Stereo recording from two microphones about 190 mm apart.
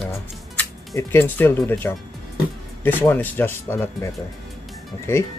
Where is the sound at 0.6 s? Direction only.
10° left (ahead or behind).